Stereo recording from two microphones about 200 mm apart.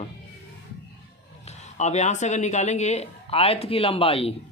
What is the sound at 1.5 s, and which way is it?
Speech, 35° left (ahead or behind).